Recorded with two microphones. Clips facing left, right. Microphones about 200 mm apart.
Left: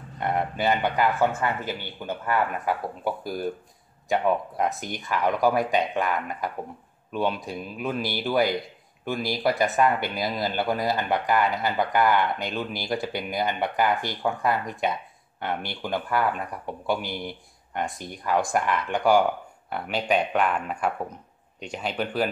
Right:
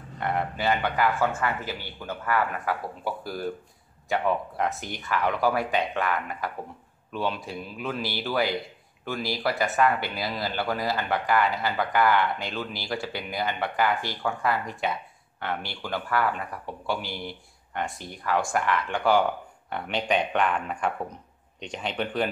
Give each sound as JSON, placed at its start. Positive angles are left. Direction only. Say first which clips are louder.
{"t": 0.2, "sound": "speech", "louder": "left 2 dB", "side_deg": 15}